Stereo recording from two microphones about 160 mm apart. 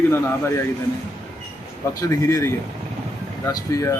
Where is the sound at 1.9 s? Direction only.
20° left (ahead or behind).